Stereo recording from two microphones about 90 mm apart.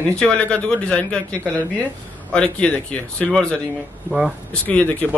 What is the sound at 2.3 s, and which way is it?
Speech, 10° left (ahead or behind).